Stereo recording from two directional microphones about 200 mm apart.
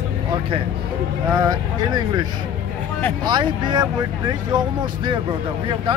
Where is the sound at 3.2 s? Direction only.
20° right (ahead or behind).